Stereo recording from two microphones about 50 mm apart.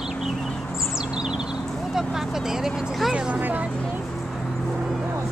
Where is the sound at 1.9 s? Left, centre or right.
Centre.